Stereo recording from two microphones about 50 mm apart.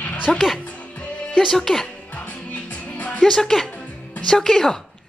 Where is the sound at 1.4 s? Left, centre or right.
Centre.